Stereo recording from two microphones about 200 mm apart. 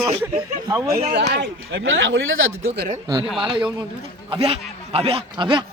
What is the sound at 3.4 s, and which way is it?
A man's voice, 25° right (ahead or behind).